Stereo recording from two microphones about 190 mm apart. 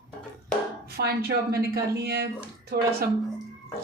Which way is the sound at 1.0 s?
60° right (ahead or behind).